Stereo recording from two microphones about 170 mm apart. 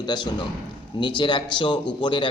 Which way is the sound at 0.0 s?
25° left (ahead or behind).